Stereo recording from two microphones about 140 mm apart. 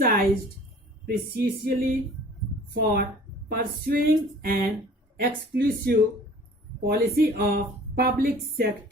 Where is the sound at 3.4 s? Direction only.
90° right.